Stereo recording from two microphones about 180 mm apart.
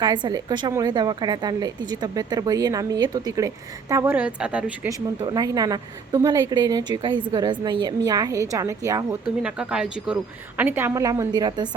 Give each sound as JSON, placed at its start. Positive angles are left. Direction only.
{"t": 0.0, "sound": "a woman's voice", "side_deg": -25}
{"t": 4.9, "sound": "a woman's voice", "side_deg": -20}
{"t": 9.4, "sound": "a woman's voice", "side_deg": -5}